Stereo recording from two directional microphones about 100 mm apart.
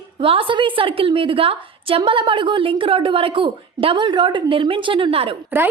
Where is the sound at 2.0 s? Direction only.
55° right (ahead or behind).